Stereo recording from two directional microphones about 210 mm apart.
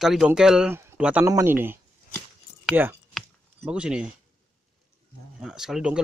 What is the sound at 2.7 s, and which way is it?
Speech, 10° right (ahead or behind).